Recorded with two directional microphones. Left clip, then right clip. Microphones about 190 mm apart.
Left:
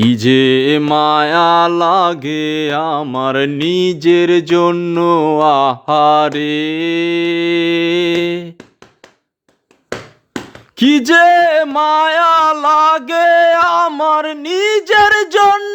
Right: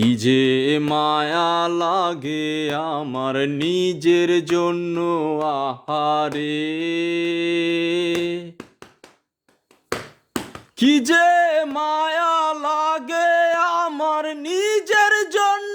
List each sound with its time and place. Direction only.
0.0 s mantra: 25° left (ahead or behind)
10.8 s mantra: 25° left (ahead or behind)